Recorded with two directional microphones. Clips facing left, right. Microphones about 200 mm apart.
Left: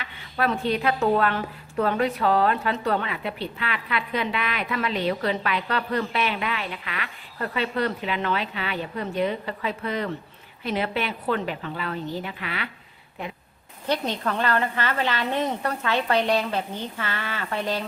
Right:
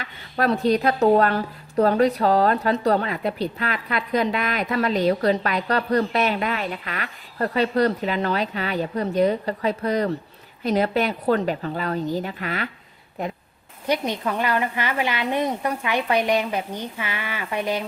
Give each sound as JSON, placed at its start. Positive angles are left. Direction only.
{"t": 0.0, "sound": "a woman's voice", "side_deg": -40}
{"t": 13.8, "sound": "a woman's voice", "side_deg": -10}